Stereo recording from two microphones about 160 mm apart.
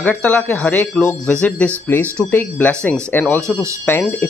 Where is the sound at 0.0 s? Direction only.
10° left (ahead or behind).